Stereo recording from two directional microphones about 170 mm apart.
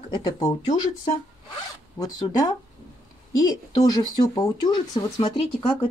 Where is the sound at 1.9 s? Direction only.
20° left (ahead or behind).